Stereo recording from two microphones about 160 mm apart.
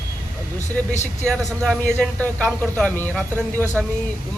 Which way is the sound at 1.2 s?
5° left (ahead or behind).